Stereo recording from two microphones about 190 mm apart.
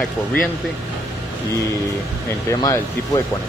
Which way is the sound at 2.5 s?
20° left (ahead or behind).